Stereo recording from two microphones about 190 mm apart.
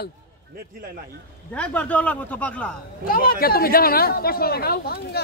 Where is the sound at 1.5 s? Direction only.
5° left (ahead or behind).